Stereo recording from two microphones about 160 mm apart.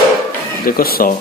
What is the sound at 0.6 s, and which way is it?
Speech, 65° left (ahead or behind).